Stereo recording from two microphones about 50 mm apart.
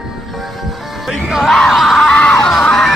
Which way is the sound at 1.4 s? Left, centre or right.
Centre.